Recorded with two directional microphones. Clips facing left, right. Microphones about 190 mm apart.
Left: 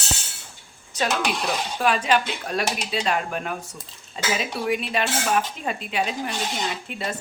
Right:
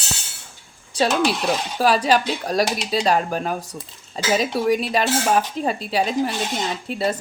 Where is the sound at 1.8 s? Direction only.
35° right (ahead or behind).